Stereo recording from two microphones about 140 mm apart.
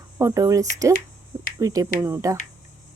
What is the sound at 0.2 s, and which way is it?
A woman's voice, 20° right (ahead or behind).